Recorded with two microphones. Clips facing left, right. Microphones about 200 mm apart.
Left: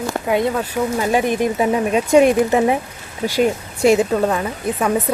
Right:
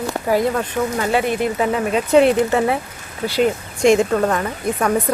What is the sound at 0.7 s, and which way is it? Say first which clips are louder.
Speech: left 1 dB; 15° left (ahead or behind).